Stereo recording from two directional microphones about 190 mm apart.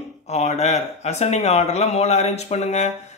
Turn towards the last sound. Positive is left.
turn(degrees=35)  # may be behind; listen again after turning